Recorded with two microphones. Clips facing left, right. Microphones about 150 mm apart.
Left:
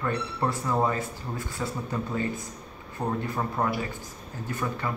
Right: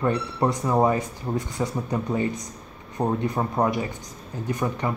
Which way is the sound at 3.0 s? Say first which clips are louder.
Right 5 dB; 35° right (ahead or behind).